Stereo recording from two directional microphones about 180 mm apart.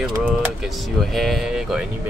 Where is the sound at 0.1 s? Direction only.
5° right (ahead or behind).